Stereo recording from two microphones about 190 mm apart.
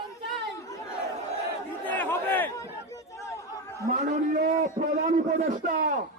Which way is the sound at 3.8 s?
40° right (ahead or behind).